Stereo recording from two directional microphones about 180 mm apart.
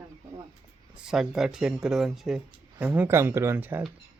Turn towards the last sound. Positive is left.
turn(degrees=-10)  # may be behind; listen again after turning